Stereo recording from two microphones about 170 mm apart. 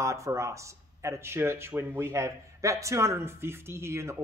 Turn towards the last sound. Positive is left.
turn(degrees=-15)  # may be behind; listen again after turning